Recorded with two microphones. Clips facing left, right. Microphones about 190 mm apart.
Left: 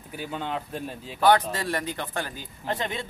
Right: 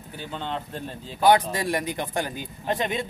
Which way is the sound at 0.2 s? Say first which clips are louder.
Left 1 dB; 10° left (ahead or behind).